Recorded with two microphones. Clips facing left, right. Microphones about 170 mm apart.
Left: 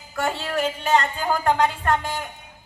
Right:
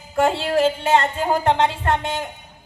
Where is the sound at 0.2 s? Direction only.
30° right (ahead or behind).